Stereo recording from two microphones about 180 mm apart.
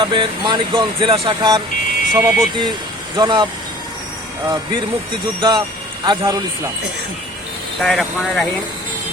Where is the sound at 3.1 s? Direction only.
25° right (ahead or behind).